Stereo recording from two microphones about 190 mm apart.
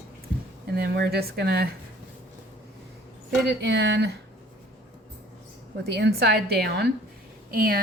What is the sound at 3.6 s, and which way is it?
Speech, 60° right (ahead or behind).